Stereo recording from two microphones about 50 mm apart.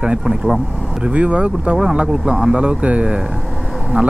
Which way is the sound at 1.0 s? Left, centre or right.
Right.